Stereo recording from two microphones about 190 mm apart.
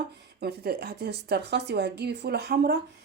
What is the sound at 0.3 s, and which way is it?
Speech, 55° right (ahead or behind).